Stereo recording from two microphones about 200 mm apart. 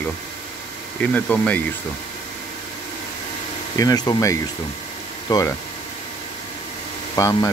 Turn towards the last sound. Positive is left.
turn(degrees=15)  # may be behind; listen again after turning